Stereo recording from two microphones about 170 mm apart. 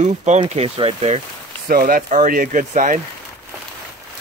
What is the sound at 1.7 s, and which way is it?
A man's voice, 55° right (ahead or behind).